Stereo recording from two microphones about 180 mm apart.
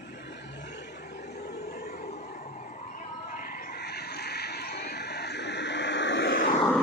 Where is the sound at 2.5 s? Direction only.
45° left (ahead or behind); by 6.4 s 75° left (ahead or behind).